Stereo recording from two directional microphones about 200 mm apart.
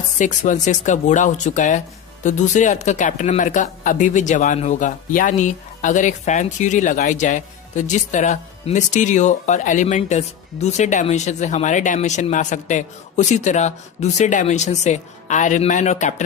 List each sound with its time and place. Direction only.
0.2 s speech: 40° left (ahead or behind)